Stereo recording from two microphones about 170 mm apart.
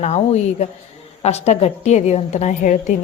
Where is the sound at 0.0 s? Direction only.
40° left (ahead or behind).